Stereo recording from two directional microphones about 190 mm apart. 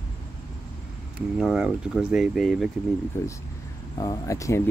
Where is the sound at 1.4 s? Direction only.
Centre (ahead or behind).